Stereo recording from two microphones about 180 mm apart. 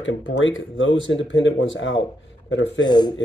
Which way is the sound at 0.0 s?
90° left.